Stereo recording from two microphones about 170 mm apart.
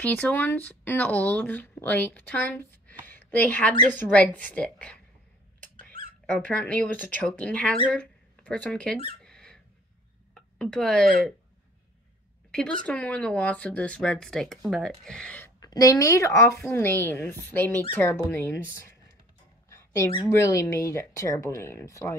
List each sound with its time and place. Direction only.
0.0 s speech: 10° left (ahead or behind)
3.1 s a sound: 10° left (ahead or behind)
3.9 s speech: 10° left (ahead or behind)
6.2 s speech: 5° left (ahead or behind)
9.2 s squeak: 5° left (ahead or behind)
10.6 s speech: 5° left (ahead or behind)
12.4 s a sound: 5° left (ahead or behind)
12.8 s speech: 10° left (ahead or behind)
15.6 s speech: 20° left (ahead or behind)
18.7 s computer keyboard: 15° left (ahead or behind)
19.7 s a sound: 15° left (ahead or behind)
20.3 s speech: 20° left (ahead or behind)